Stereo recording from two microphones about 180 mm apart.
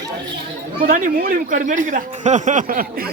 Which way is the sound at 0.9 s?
50° right (ahead or behind).